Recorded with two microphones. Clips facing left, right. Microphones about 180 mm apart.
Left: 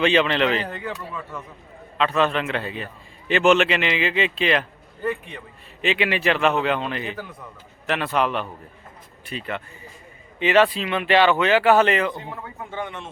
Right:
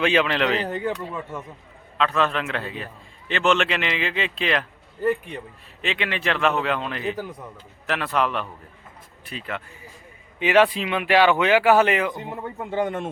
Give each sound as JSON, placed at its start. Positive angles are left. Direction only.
{"t": 0.0, "sound": "a man's voice", "side_deg": -5}
{"t": 0.7, "sound": "speech", "side_deg": -20}
{"t": 2.0, "sound": "a man's voice", "side_deg": 0}
{"t": 5.8, "sound": "a man's voice", "side_deg": 5}
{"t": 10.4, "sound": "speech", "side_deg": -10}
{"t": 12.4, "sound": "speech", "side_deg": -35}